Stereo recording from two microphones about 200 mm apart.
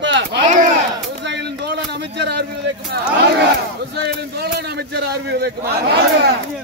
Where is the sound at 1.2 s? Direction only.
60° right (ahead or behind).